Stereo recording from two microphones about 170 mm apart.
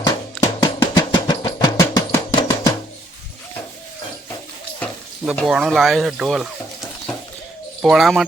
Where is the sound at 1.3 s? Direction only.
20° left (ahead or behind).